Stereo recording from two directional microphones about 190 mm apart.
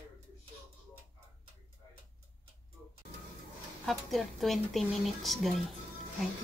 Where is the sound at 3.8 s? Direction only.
Centre (ahead or behind).